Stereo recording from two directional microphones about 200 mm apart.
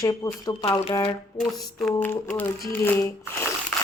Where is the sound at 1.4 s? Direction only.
5° left (ahead or behind).